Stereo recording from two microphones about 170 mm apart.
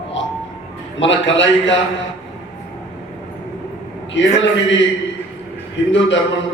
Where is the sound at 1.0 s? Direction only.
90° left.